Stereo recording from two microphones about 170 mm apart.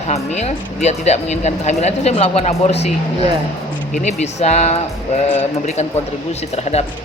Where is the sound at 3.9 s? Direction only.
40° left (ahead or behind).